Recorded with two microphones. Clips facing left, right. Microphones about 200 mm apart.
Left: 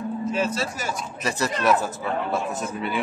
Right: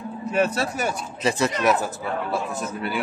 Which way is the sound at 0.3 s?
60° right (ahead or behind).